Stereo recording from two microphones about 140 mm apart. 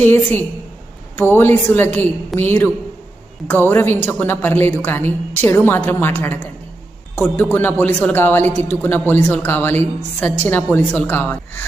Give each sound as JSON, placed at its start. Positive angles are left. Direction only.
{"t": 0.0, "sound": "a woman's voice", "side_deg": 15}